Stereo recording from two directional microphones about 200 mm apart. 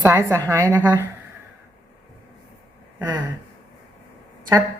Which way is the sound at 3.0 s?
20° right (ahead or behind).